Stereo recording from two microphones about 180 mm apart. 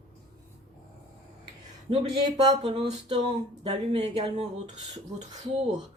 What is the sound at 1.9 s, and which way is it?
Speech, 25° right (ahead or behind).